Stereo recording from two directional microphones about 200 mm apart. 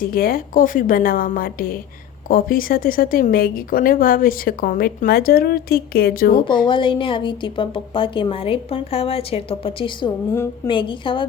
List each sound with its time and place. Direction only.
0.1 s a woman's voice: 45° left (ahead or behind)
6.3 s a woman's voice: 25° left (ahead or behind)